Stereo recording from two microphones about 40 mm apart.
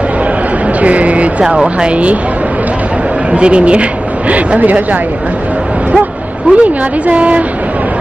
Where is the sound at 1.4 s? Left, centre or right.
Right.